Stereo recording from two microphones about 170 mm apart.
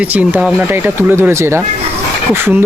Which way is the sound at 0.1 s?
10° right (ahead or behind).